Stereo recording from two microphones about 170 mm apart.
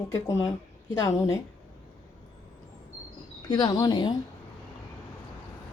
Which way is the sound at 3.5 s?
25° left (ahead or behind).